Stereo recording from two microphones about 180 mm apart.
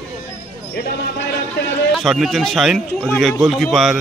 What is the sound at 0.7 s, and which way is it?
Basketball bounce, 65° left (ahead or behind).